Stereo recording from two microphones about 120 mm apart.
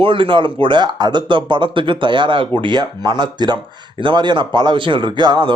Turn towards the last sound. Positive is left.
turn(degrees=-40)  # may be behind; listen again after turning